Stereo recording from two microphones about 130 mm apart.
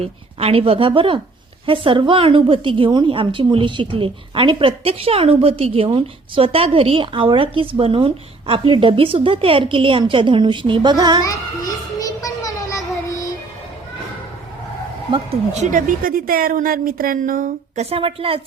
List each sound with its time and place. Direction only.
0.0 s a woman's voice: 50° right (ahead or behind)
11.2 s child singing: 25° left (ahead or behind)
15.5 s a woman's voice: 75° right (ahead or behind)
17.8 s a woman's voice: 45° right (ahead or behind)